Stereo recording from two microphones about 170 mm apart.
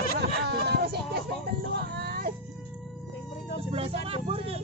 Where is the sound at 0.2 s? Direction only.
80° right.